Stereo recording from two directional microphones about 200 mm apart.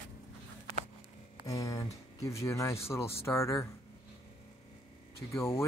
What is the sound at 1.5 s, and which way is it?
Speech, 15° left (ahead or behind).